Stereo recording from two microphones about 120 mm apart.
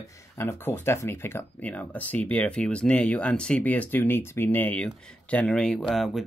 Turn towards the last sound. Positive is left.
turn(degrees=0)  # may be behind; listen again after turning